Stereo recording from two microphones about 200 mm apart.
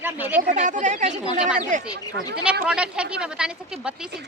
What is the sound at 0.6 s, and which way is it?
Speech, 35° right (ahead or behind).